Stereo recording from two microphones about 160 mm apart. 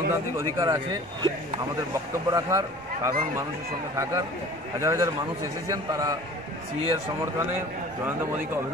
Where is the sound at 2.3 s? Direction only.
20° right (ahead or behind).